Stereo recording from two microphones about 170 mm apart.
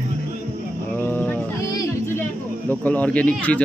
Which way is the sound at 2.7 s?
10° left (ahead or behind).